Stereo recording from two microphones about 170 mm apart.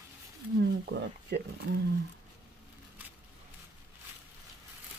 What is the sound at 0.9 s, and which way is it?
Speech, 80° right.